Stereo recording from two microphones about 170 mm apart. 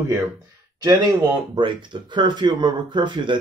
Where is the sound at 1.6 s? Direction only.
30° right (ahead or behind).